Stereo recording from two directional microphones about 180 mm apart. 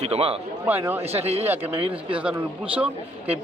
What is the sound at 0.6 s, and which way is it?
Speech, 10° right (ahead or behind).